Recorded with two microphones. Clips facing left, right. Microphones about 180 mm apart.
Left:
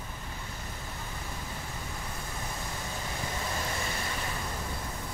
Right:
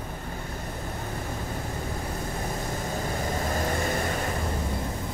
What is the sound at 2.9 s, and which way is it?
Vehicle, 45° right (ahead or behind).